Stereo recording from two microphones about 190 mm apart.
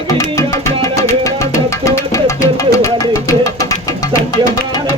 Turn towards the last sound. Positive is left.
turn(degrees=15)  # may be behind; listen again after turning